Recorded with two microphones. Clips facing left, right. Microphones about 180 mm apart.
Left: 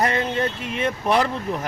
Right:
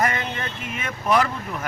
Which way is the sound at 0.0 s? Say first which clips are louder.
Left 4 dB; 30° left (ahead or behind).